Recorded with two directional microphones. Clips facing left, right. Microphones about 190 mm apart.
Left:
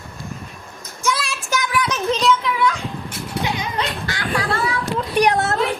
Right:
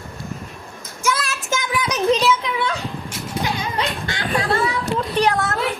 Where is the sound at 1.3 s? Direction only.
20° right (ahead or behind).